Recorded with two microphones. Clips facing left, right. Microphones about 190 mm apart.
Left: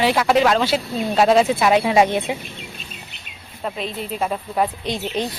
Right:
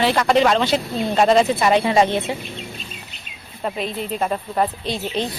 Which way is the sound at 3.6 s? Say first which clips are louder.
Right 2 dB; centre (ahead or behind).